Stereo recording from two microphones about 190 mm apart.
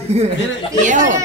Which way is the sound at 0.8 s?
40° right (ahead or behind).